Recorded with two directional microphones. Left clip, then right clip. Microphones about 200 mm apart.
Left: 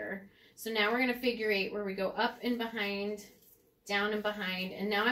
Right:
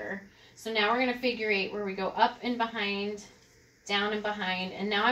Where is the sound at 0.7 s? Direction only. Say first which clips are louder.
Right 3 dB; 10° right (ahead or behind).